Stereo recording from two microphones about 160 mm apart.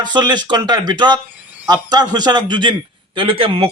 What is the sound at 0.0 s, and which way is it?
A man's voice, 25° right (ahead or behind).